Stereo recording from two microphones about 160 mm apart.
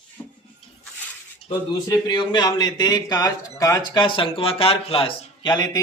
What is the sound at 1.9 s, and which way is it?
Speech, 25° left (ahead or behind).